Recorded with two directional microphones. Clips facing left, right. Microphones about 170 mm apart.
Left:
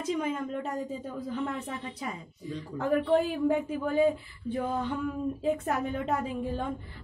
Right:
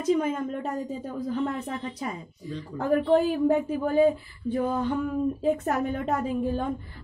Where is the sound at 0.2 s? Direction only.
45° right (ahead or behind).